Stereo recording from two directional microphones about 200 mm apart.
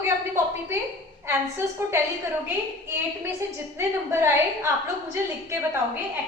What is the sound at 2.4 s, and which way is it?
A woman's voice, 10° right (ahead or behind).